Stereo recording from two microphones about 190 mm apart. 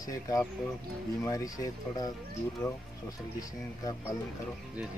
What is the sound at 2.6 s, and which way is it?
Speech, 5° left (ahead or behind).